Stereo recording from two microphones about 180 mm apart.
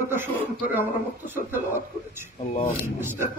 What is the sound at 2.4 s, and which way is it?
Speech, 40° left (ahead or behind).